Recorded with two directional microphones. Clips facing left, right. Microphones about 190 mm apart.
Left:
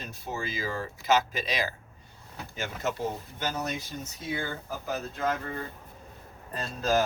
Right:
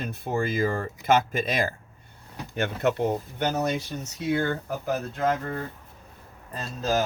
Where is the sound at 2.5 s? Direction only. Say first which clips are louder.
Right 8 dB; 65° right (ahead or behind).